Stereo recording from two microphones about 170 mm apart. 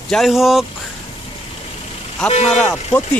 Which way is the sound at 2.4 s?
5° left (ahead or behind).